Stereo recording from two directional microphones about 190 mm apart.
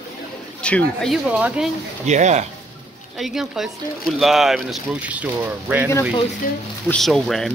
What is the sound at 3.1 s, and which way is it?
Speech, centre (ahead or behind).